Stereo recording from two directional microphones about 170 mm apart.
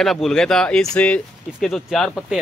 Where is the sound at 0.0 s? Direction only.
Centre (ahead or behind).